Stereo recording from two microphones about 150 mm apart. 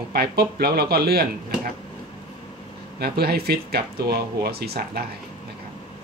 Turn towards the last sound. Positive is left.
turn(degrees=-90)